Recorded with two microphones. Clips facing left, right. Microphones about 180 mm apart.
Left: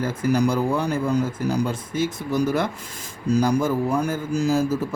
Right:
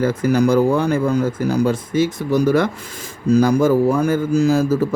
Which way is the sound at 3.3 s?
90° right.